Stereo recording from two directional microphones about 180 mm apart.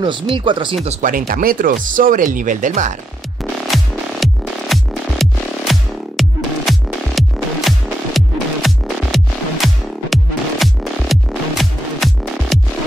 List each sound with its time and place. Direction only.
0.0 s speech: 25° right (ahead or behind)
0.8 s speech: 50° right (ahead or behind)
3.6 s music: centre (ahead or behind)